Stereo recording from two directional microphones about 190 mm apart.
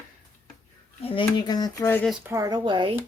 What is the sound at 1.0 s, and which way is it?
Speech, 25° left (ahead or behind).